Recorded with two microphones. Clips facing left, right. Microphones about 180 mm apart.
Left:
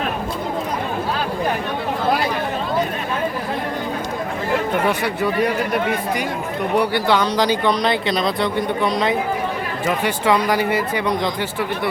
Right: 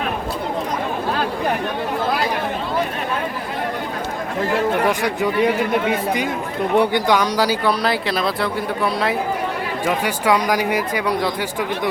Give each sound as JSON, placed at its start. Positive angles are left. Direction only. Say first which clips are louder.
{"t": 4.9, "sound": "speech", "louder": "right 1 dB", "side_deg": -15}
{"t": 6.7, "sound": "speech", "louder": "right 1 dB", "side_deg": -15}